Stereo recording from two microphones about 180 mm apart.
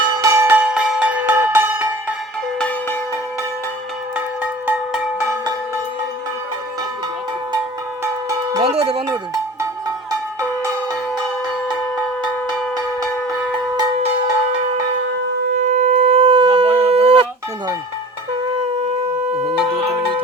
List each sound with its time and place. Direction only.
0.1 s music: 15° right (ahead or behind)
2.6 s music: 5° left (ahead or behind)
5.2 s a sound: 15° right (ahead or behind)
8.0 s cowbell: 20° right (ahead or behind)
8.6 s music: 35° right (ahead or behind)
15.5 s shofar: 40° right (ahead or behind)
16.9 s a sound: 30° right (ahead or behind)
19.4 s music: 35° right (ahead or behind)